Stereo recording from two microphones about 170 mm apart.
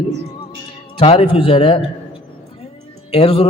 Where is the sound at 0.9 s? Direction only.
35° left (ahead or behind).